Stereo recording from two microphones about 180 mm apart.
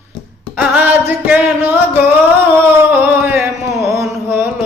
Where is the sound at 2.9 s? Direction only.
10° right (ahead or behind).